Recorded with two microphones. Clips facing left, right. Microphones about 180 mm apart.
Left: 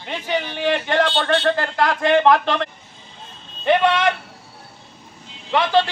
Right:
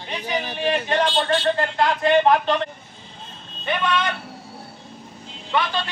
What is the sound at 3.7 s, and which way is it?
Speech, 75° left (ahead or behind).